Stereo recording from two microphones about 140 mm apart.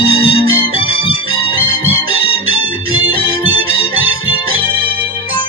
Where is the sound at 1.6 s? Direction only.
90° right.